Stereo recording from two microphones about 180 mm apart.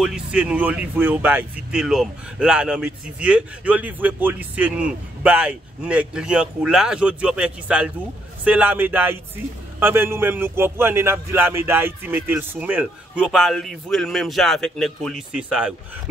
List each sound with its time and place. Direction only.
0.0 s speech: 5° right (ahead or behind)